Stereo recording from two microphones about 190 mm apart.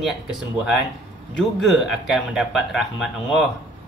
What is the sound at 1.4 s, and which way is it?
Speech, centre (ahead or behind).